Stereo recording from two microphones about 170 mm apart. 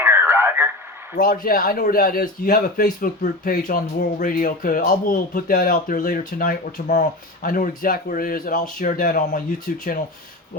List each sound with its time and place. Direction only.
0.0 s radio: 15° right (ahead or behind)
1.1 s speech: 55° left (ahead or behind)